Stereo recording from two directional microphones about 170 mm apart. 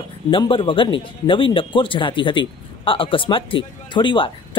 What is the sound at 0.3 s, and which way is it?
Speech, 30° left (ahead or behind).